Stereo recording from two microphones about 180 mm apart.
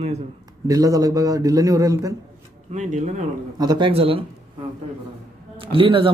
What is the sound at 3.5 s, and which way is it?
A man's voice, 25° right (ahead or behind).